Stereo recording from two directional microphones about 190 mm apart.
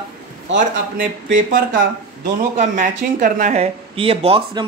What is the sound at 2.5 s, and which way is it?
Speech, 40° right (ahead or behind).